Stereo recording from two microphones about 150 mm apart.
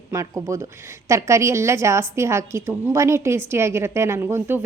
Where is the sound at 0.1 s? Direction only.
20° right (ahead or behind).